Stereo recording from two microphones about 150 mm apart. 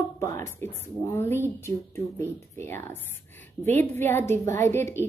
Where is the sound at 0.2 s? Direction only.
20° left (ahead or behind).